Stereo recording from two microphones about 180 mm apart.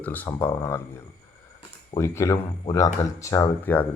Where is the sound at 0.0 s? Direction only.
10° left (ahead or behind).